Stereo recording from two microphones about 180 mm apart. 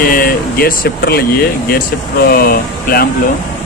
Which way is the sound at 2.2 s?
55° left (ahead or behind).